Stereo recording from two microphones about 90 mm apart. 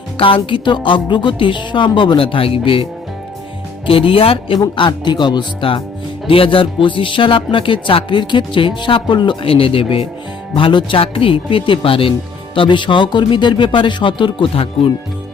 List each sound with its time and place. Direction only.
0.2 s speech: 80° left
3.8 s speech: 90° left
4.7 s a man's voice: 60° left (ahead or behind)
6.2 s speech: 90° left
10.5 s speech: 65° left (ahead or behind); by 12.1 s 80° left
12.5 s a man's voice: 65° left (ahead or behind); by 14.9 s 90° left